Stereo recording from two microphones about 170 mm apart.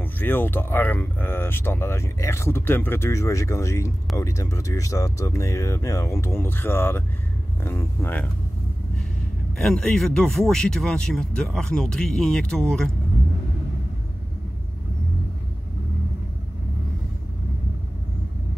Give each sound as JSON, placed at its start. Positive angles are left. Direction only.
{"t": 0.0, "sound": "speech", "side_deg": 10}
{"t": 9.6, "sound": "speech", "side_deg": 5}